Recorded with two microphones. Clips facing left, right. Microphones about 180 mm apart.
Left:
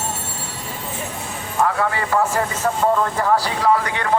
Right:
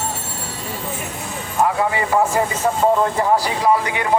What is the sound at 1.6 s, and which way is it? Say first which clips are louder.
Speech: right 2 dB; 15° right (ahead or behind).